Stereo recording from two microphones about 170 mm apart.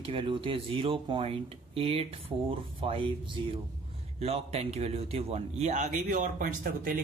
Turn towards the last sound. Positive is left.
turn(degrees=-50)  # may be behind; listen again after turning